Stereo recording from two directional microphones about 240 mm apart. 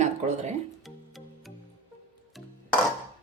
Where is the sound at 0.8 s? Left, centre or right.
Centre.